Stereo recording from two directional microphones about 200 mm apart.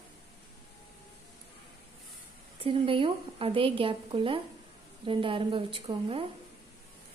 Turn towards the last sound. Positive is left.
turn(degrees=-25)  # may be behind; listen again after turning